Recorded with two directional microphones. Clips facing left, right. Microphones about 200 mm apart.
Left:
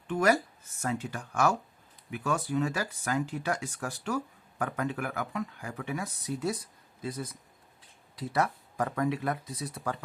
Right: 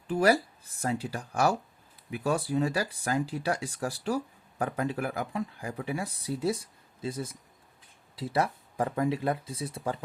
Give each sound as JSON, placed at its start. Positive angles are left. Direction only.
{"t": 0.1, "sound": "speech", "side_deg": -35}